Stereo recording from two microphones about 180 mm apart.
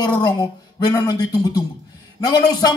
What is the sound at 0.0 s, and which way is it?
A man's voice, 25° left (ahead or behind).